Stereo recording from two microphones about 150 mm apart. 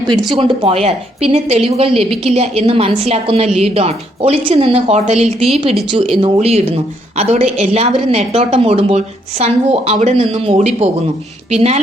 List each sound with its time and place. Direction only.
0.3 s a woman's voice: 40° right (ahead or behind)
5.5 s a woman's voice: 35° right (ahead or behind)
7.2 s a woman's voice: 45° right (ahead or behind)